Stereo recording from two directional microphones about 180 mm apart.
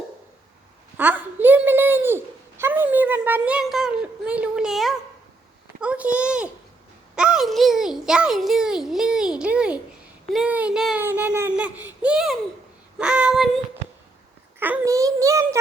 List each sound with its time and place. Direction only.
0.9 s a sound: 10° right (ahead or behind)
5.8 s a child's voice: 5° right (ahead or behind)
14.6 s a child's voice: 15° right (ahead or behind)